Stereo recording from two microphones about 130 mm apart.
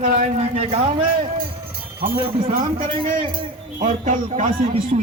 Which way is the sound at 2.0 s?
45° right (ahead or behind).